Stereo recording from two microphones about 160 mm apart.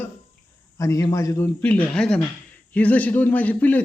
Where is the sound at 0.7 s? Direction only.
20° left (ahead or behind).